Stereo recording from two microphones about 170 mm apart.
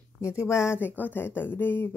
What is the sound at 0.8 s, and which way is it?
Speech, 10° left (ahead or behind).